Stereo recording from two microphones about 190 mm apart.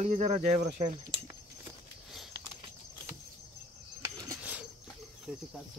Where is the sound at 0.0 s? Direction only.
40° right (ahead or behind).